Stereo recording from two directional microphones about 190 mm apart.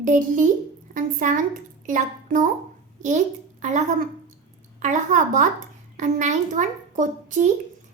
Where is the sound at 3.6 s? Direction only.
40° right (ahead or behind).